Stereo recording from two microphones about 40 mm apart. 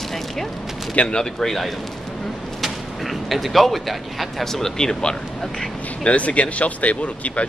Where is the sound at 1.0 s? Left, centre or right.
Centre.